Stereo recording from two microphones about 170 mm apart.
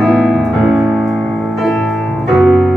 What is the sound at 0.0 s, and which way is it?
Music, centre (ahead or behind).